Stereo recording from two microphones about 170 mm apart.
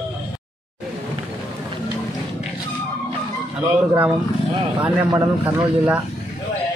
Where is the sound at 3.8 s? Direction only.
10° right (ahead or behind).